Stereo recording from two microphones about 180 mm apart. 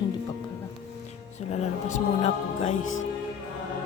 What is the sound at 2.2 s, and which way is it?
Music, 35° left (ahead or behind).